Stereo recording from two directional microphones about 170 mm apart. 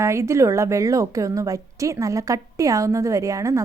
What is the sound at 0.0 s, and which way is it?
A woman's voice, 15° right (ahead or behind).